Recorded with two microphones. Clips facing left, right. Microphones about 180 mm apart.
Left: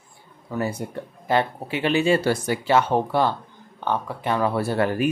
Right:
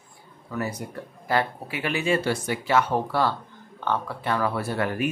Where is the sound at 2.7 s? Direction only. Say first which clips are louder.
Left 2 dB; 25° left (ahead or behind).